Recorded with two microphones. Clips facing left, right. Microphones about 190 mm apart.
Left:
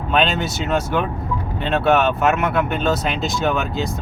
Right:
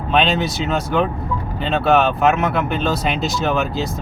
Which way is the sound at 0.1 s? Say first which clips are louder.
Right 2 dB; centre (ahead or behind).